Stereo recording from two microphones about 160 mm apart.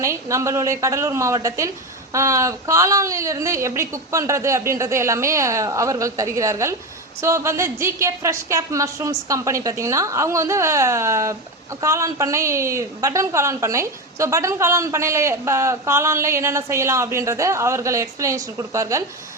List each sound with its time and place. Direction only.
0.0 s a woman's voice: 20° right (ahead or behind)